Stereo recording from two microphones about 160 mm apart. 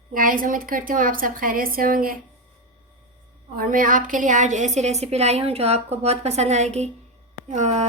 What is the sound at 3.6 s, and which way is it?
A woman's voice, 60° right (ahead or behind).